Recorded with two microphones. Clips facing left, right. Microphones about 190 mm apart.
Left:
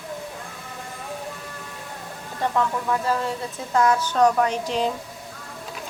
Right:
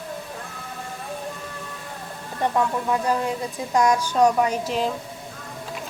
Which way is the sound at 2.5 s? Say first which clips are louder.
Right 1 dB; 15° right (ahead or behind).